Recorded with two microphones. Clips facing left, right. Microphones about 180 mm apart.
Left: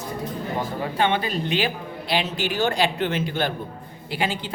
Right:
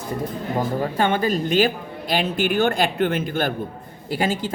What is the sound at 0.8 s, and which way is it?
A woman's voice, 45° right (ahead or behind).